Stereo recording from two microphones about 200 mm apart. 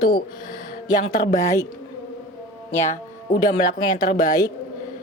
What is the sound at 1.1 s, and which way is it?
Speech, 40° left (ahead or behind).